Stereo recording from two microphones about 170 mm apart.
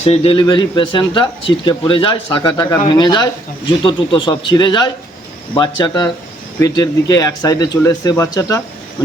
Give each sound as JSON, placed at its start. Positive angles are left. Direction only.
{"t": 0.0, "sound": "speech", "side_deg": 35}